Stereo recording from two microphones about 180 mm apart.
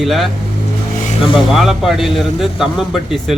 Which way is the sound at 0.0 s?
Centre (ahead or behind).